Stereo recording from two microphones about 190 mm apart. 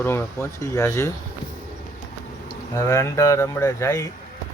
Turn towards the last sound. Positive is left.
turn(degrees=15)  # may be behind; listen again after turning